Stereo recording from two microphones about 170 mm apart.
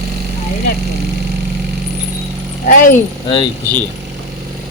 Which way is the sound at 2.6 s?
50° left (ahead or behind).